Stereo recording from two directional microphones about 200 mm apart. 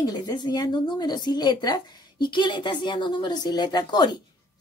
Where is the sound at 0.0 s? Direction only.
20° left (ahead or behind).